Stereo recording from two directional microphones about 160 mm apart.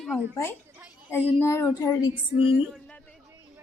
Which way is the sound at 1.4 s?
15° left (ahead or behind).